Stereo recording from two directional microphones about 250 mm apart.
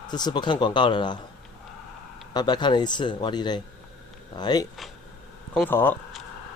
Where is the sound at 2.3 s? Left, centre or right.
Centre.